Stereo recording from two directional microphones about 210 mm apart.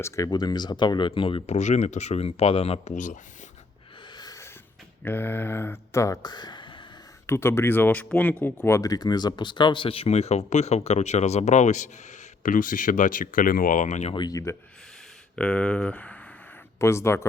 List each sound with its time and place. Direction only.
0.0 s speech: 15° left (ahead or behind); by 3.2 s 35° left (ahead or behind)
4.2 s a sound: 15° left (ahead or behind)
5.0 s speech: 10° left (ahead or behind)
15.4 s speech: 5° left (ahead or behind)